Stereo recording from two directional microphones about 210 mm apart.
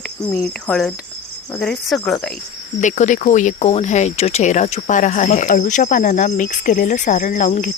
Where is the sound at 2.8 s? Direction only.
35° left (ahead or behind).